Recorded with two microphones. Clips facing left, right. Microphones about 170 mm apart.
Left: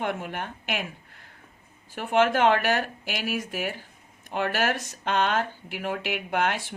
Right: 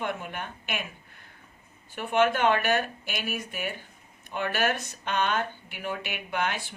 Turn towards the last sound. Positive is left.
turn(degrees=80)